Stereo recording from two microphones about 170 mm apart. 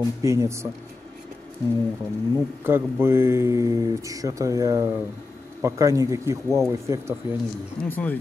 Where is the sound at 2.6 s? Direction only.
15° right (ahead or behind).